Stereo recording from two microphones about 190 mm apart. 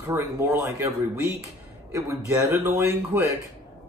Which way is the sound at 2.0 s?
15° right (ahead or behind).